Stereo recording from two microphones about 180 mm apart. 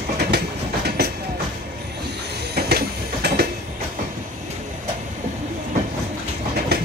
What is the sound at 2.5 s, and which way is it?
Train, 60° right (ahead or behind).